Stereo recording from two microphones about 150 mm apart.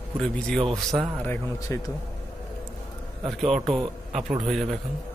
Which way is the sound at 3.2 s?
Centre (ahead or behind).